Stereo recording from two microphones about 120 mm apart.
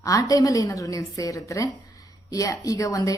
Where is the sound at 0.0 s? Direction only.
30° left (ahead or behind).